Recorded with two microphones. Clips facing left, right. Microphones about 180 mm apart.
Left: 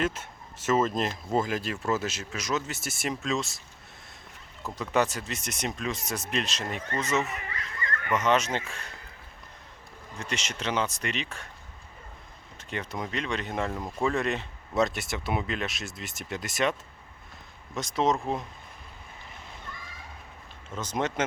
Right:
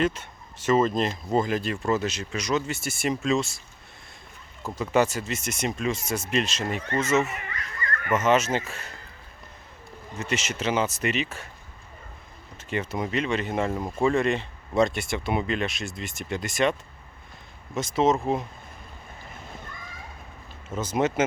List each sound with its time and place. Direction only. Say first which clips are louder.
0.0 s speech: right 4 dB; 5° left (ahead or behind)
4.6 s speech: right 4 dB; centre (ahead or behind)
7.3 s a sound: right 1 dB; 30° left (ahead or behind)
8.1 s speech: right 3 dB; 5° right (ahead or behind)
10.2 s speech: right 5 dB; 5° right (ahead or behind)
12.5 s speech: right 5 dB; 5° right (ahead or behind)
17.7 s speech: right 4 dB; centre (ahead or behind)
20.7 s speech: right 5 dB; 5° right (ahead or behind)